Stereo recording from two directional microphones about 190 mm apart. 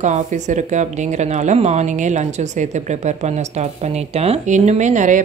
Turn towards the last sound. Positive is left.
turn(degrees=-40)  # may be behind; listen again after turning